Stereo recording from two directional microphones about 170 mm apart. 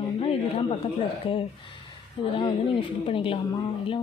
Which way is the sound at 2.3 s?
30° left (ahead or behind).